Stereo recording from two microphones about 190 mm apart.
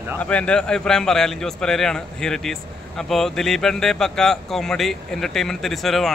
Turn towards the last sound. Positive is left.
turn(degrees=0)  # may be behind; listen again after turning